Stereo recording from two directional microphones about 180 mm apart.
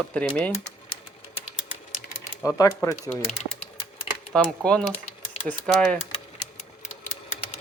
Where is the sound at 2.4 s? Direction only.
20° left (ahead or behind).